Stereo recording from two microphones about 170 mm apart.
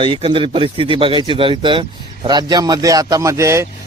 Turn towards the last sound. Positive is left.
turn(degrees=-15)  # may be behind; listen again after turning